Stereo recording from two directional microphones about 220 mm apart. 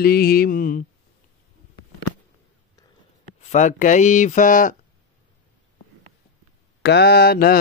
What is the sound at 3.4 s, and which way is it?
Speech, 35° left (ahead or behind).